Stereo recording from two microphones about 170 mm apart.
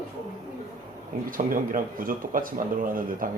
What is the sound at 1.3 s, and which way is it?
Speech, 55° right (ahead or behind).